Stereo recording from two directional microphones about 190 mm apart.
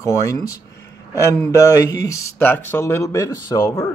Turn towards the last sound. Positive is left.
turn(degrees=15)  # may be behind; listen again after turning